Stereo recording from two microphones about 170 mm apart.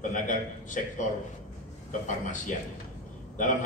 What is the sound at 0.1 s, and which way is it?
Speech, 50° left (ahead or behind).